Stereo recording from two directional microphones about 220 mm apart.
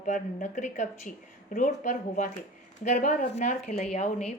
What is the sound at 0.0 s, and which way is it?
A woman's voice, 35° left (ahead or behind).